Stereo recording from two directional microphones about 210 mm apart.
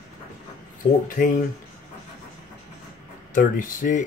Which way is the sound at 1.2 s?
35° left (ahead or behind).